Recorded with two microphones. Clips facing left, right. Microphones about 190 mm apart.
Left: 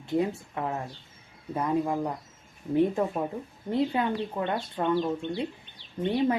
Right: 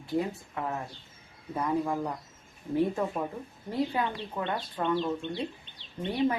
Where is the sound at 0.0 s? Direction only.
25° left (ahead or behind).